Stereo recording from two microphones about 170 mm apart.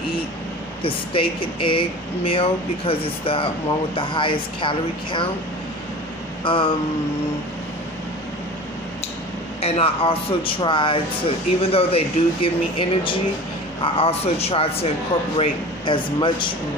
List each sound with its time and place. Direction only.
0.8 s a man's voice: 30° left (ahead or behind)
6.4 s a man's voice: 30° left (ahead or behind)
9.6 s a man's voice: 35° left (ahead or behind)